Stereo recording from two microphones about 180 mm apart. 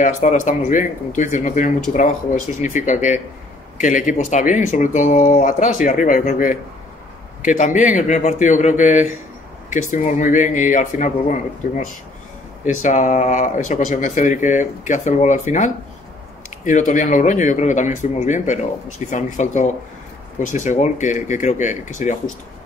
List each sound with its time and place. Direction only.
0.0 s speech: 45° left (ahead or behind)
12.6 s speech: 45° left (ahead or behind)